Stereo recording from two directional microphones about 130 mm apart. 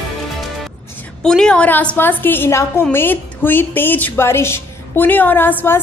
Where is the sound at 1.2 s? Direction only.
5° left (ahead or behind).